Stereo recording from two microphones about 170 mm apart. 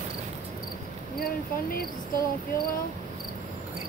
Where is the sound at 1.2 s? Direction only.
65° left (ahead or behind).